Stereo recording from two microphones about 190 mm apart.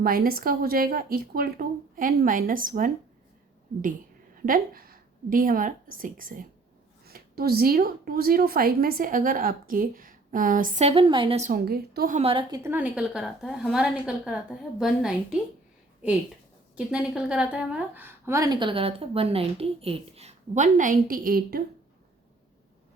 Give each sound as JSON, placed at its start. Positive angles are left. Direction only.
{"t": 0.0, "sound": "speech", "side_deg": -50}
{"t": 4.4, "sound": "a woman's voice", "side_deg": -50}
{"t": 11.5, "sound": "a woman's voice", "side_deg": -55}
{"t": 12.1, "sound": "a woman's voice", "side_deg": -30}
{"t": 12.6, "sound": "a woman's voice", "side_deg": -10}
{"t": 16.7, "sound": "a woman's voice", "side_deg": -5}